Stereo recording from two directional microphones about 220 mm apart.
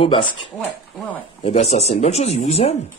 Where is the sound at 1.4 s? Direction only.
30° left (ahead or behind).